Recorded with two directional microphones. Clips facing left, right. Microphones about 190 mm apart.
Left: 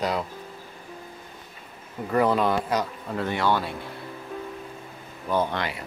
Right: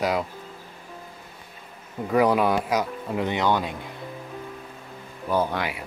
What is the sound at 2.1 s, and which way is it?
Speech, 10° right (ahead or behind).